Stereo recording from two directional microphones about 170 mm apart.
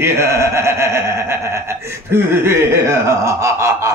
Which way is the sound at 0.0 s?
15° right (ahead or behind).